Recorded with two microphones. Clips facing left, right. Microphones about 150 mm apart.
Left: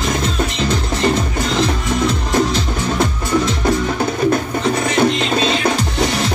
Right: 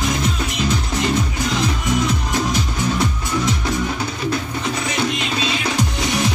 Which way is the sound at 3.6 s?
50° left (ahead or behind).